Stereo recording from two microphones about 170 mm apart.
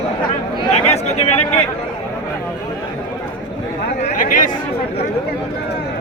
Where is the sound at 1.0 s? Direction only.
40° left (ahead or behind).